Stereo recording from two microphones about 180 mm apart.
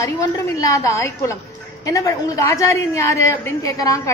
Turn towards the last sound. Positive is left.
turn(degrees=20)  # may be behind; listen again after turning